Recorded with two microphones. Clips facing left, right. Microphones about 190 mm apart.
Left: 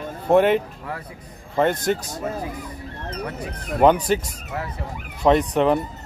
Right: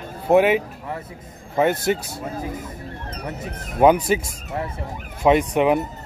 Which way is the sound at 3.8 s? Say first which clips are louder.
Right 1 dB; 10° right (ahead or behind).